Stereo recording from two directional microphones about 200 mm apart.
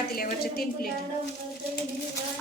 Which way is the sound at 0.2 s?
50° left (ahead or behind).